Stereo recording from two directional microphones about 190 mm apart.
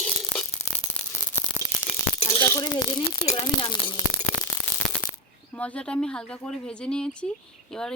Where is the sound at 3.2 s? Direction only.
25° left (ahead or behind).